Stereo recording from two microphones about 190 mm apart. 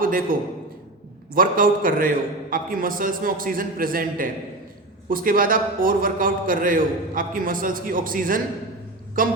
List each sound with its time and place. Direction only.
0.0 s a man's voice: 45° right (ahead or behind)